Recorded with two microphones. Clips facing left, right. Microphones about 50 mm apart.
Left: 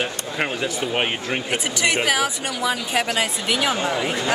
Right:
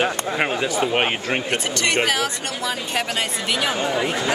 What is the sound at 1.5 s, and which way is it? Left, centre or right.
Speech, centre.